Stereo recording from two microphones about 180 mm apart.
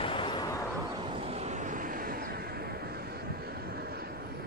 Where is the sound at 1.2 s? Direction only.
35° right (ahead or behind); by 2.6 s 60° right (ahead or behind).